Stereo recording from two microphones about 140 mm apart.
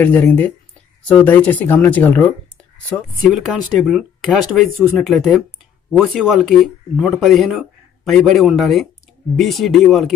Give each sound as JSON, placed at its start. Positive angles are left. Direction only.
{"t": 0.0, "sound": "speech", "side_deg": 10}